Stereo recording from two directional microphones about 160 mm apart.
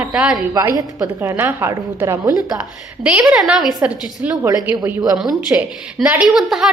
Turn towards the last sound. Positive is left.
turn(degrees=0)  # may be behind; listen again after turning